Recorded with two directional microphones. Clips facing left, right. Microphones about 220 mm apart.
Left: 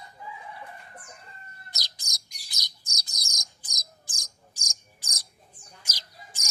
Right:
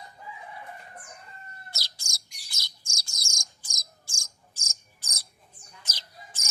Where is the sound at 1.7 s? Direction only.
20° left (ahead or behind).